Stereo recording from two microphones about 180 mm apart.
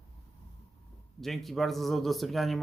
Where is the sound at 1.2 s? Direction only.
Centre (ahead or behind).